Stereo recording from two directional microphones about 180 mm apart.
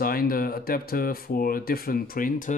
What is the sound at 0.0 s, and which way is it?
Speech, 55° left (ahead or behind).